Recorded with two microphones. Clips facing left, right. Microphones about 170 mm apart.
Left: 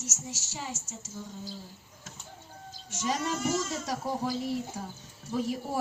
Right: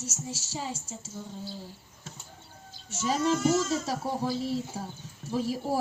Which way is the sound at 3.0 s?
30° right (ahead or behind).